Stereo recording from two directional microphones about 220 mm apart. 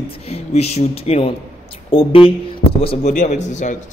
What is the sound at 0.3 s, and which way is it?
A woman's voice, 30° left (ahead or behind).